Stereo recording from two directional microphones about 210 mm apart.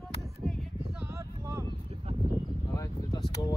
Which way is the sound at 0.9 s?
10° right (ahead or behind).